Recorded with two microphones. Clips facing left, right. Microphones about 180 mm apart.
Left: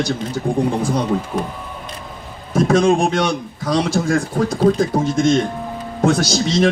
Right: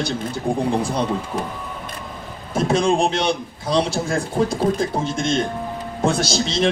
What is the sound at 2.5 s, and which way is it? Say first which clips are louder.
Speech: left 4 dB; 30° right (ahead or behind).